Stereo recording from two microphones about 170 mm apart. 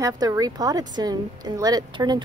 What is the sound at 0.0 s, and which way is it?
Speech, 20° right (ahead or behind).